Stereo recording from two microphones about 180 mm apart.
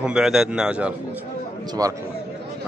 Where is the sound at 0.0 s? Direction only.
5° right (ahead or behind).